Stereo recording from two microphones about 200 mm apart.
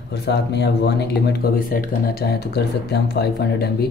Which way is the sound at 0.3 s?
55° left (ahead or behind).